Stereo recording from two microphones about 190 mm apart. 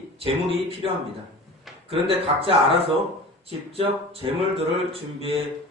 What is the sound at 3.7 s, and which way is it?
Speech, 30° right (ahead or behind).